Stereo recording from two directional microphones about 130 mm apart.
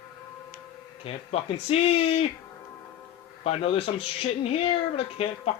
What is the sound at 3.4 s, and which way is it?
Speech, 50° left (ahead or behind).